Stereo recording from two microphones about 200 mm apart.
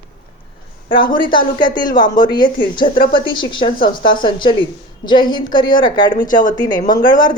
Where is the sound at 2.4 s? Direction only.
45° left (ahead or behind).